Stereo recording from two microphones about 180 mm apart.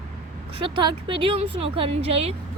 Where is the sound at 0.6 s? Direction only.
30° right (ahead or behind).